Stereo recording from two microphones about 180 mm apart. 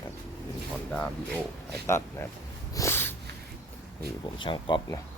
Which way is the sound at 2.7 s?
15° left (ahead or behind).